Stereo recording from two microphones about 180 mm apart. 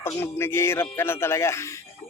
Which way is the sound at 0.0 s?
10° left (ahead or behind).